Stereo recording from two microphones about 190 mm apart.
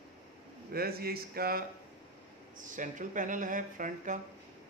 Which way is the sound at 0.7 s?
55° right (ahead or behind).